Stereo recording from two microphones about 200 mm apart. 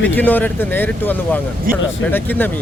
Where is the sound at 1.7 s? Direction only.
45° right (ahead or behind).